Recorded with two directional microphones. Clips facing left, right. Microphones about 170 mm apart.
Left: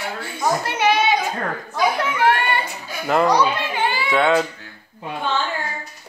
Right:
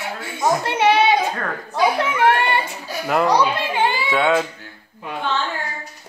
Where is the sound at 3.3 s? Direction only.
30° right (ahead or behind).